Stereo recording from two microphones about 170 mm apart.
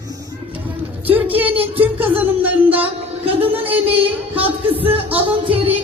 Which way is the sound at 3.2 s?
35° right (ahead or behind).